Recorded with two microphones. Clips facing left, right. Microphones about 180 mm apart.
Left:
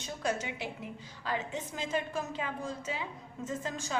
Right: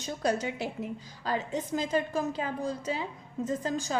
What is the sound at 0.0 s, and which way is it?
A woman's voice, 40° right (ahead or behind).